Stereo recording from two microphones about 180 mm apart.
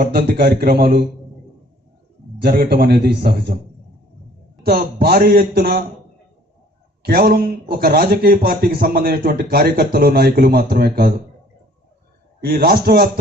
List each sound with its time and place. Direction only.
0.0 s speech: 60° right (ahead or behind)
2.3 s speech: 55° right (ahead or behind)
4.6 s speech: 60° right (ahead or behind)
7.0 s speech: 55° right (ahead or behind)
12.4 s speech: 60° right (ahead or behind)